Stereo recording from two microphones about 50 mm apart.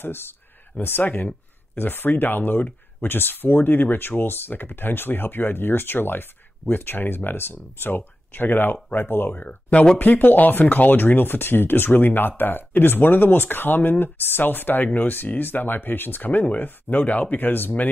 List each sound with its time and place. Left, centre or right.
0.0 s speech: left